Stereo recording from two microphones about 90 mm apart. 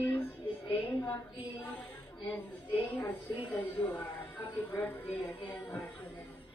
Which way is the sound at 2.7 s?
25° left (ahead or behind).